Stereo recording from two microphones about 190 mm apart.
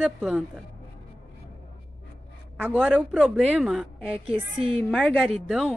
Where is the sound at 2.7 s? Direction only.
5° right (ahead or behind).